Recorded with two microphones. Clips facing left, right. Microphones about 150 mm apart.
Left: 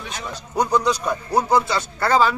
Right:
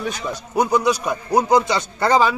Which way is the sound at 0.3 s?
10° right (ahead or behind).